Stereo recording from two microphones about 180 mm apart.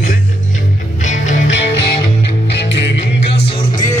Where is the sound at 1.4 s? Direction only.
80° left.